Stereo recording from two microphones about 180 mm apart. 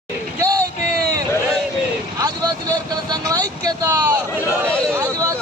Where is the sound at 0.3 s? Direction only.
20° right (ahead or behind).